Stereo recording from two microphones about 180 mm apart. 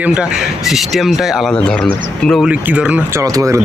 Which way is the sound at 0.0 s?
5° right (ahead or behind).